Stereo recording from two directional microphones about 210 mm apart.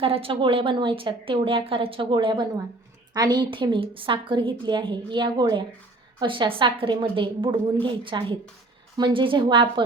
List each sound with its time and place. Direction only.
0.0 s a woman's voice: 25° right (ahead or behind)